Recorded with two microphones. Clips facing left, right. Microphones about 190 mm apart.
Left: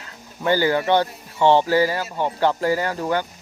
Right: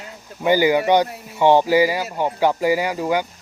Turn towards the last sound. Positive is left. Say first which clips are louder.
# right 2 dB
turn(degrees=-10)  # may be behind; listen again after turning